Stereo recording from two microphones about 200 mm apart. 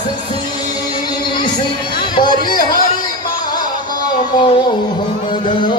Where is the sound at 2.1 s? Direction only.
20° left (ahead or behind).